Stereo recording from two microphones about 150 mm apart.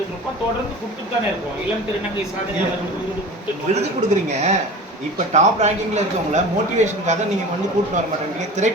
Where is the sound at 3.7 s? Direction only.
50° right (ahead or behind).